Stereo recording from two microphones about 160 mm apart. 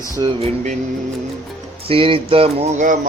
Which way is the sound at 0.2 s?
30° right (ahead or behind).